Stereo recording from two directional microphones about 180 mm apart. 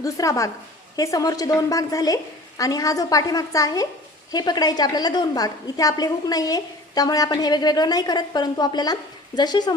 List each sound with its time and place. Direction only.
0.0 s a woman's voice: 20° left (ahead or behind)